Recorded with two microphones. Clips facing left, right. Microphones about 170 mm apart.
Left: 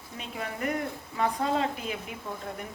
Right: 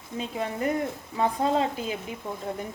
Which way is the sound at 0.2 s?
30° right (ahead or behind).